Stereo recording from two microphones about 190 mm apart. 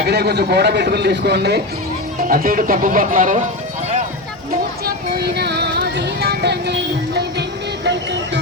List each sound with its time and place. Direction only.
0.0 s a man's voice: 60° right (ahead or behind)
2.2 s speech: 50° right (ahead or behind)
5.3 s music: 60° right (ahead or behind)